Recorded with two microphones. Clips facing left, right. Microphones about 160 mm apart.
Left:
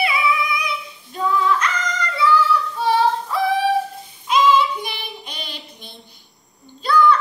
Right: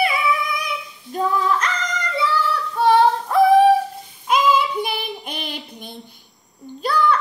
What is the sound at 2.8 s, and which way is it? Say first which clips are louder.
Female singing: right 5 dB; 55° right (ahead or behind).